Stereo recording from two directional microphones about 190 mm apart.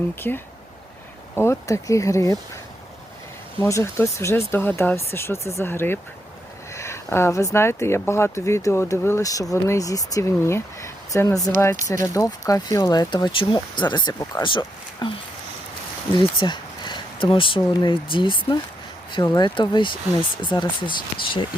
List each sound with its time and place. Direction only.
0.2 s speech: 10° left (ahead or behind)
3.6 s speech: 15° left (ahead or behind)
16.1 s speech: 25° left (ahead or behind)
19.5 s speech: 25° left (ahead or behind)